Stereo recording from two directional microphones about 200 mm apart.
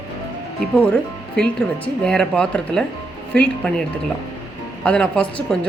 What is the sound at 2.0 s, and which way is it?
Speech, 5° left (ahead or behind).